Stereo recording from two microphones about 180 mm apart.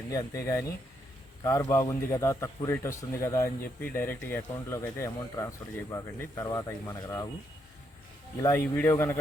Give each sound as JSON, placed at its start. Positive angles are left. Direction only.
{"t": 0.1, "sound": "speech", "side_deg": 20}
{"t": 8.4, "sound": "speech", "side_deg": 15}